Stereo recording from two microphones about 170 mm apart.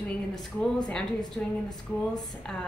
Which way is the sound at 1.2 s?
25° left (ahead or behind).